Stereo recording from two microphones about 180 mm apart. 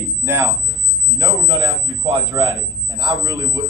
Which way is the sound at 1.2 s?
30° right (ahead or behind).